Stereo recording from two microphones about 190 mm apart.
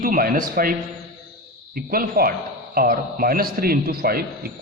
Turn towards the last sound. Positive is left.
turn(degrees=-50)  # may be behind; listen again after turning